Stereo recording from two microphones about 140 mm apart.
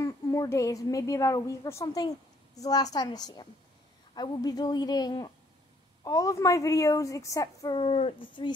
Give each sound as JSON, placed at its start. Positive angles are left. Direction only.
{"t": 0.0, "sound": "a woman's voice", "side_deg": 25}
{"t": 7.7, "sound": "speech", "side_deg": 45}